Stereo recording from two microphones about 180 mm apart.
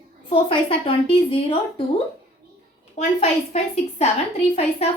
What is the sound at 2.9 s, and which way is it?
A woman's voice, 35° left (ahead or behind).